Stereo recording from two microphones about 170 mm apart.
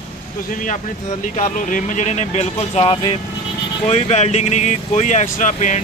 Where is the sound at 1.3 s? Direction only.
45° left (ahead or behind).